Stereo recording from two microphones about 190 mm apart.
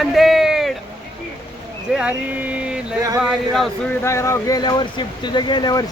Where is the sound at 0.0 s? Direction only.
Centre (ahead or behind).